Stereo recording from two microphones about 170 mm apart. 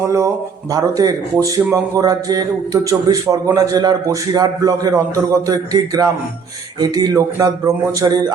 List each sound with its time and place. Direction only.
0.0 s a man's voice: 15° right (ahead or behind)